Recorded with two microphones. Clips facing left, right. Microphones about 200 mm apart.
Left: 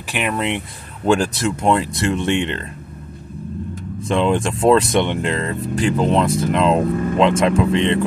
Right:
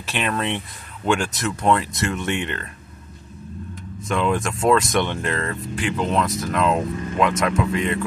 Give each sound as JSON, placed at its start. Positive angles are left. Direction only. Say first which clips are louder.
{"t": 0.0, "sound": "speech", "louder": "left 2 dB", "side_deg": 15}
{"t": 1.0, "sound": "speech", "louder": "left 5 dB", "side_deg": 35}
{"t": 1.6, "sound": "speech", "louder": "left 1 dB", "side_deg": 25}
{"t": 4.1, "sound": "speech", "louder": "left 4 dB", "side_deg": 30}
{"t": 5.8, "sound": "speech", "louder": "left 5 dB", "side_deg": 40}
{"t": 6.8, "sound": "speech", "louder": "left 7 dB", "side_deg": 55}
{"t": 7.2, "sound": "speech", "louder": "left 4 dB", "side_deg": 25}